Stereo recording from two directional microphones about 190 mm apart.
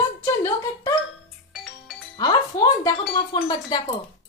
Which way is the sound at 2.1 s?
20° left (ahead or behind).